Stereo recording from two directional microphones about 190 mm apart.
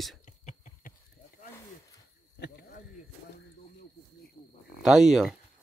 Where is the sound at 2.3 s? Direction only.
55° left (ahead or behind).